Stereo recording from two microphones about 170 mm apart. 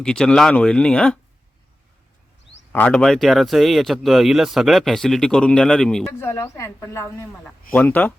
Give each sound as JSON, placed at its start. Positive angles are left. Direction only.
{"t": 0.0, "sound": "speech", "side_deg": 5}
{"t": 2.7, "sound": "speech", "side_deg": 5}
{"t": 6.1, "sound": "a woman's voice", "side_deg": 15}